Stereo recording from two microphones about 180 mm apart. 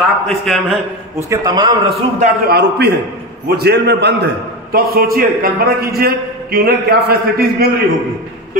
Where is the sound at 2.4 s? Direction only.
65° right (ahead or behind).